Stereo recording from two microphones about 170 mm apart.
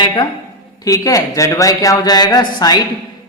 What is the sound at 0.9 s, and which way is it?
A man's voice, 20° left (ahead or behind).